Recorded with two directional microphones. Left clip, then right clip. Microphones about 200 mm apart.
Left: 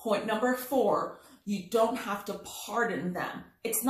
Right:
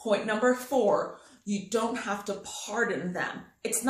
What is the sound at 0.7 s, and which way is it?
Speech, 20° right (ahead or behind).